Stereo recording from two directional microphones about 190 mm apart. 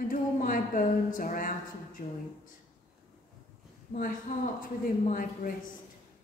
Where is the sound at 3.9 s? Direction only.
45° left (ahead or behind).